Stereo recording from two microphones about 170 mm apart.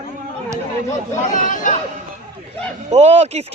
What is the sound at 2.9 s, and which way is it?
Speech, 40° right (ahead or behind).